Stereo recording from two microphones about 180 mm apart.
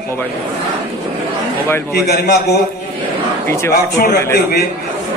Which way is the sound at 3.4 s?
15° left (ahead or behind).